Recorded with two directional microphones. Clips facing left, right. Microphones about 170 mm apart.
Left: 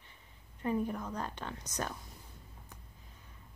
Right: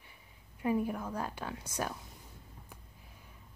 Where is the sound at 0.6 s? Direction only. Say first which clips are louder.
Right 2 dB; 10° right (ahead or behind).